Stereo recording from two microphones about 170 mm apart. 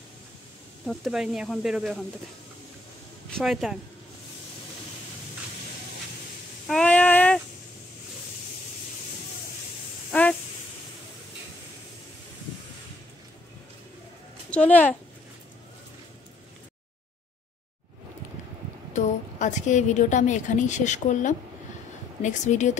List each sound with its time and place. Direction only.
0.8 s speech: centre (ahead or behind)
3.3 s speech: centre (ahead or behind)
6.7 s child singing: 5° left (ahead or behind)
14.5 s a child's voice: 10° left (ahead or behind)
18.9 s a woman's voice: 45° left (ahead or behind)